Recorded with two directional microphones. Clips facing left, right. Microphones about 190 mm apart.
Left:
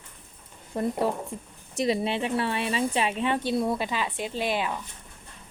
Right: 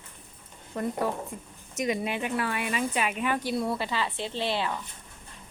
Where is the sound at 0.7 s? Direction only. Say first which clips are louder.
Left 3 dB; 30° left (ahead or behind).